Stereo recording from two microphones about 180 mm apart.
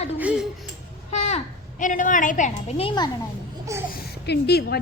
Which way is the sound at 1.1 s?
40° left (ahead or behind).